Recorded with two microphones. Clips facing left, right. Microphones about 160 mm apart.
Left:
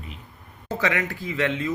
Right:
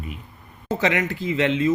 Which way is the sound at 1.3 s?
20° right (ahead or behind).